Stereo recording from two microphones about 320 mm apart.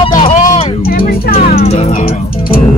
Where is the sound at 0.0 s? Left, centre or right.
Centre.